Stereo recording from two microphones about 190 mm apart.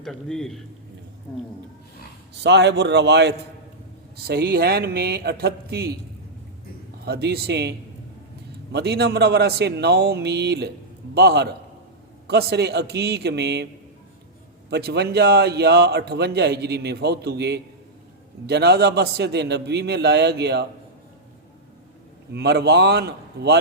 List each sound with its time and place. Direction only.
0.0 s a man's voice: centre (ahead or behind)
2.3 s a man's voice: 65° right (ahead or behind)
7.0 s a man's voice: 60° right (ahead or behind)
14.7 s a man's voice: 55° right (ahead or behind)
22.3 s a man's voice: 60° right (ahead or behind)